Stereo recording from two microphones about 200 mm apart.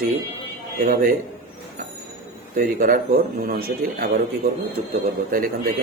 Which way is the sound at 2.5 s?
45° right (ahead or behind).